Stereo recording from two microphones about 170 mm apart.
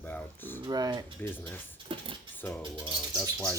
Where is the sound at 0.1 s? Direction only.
10° left (ahead or behind).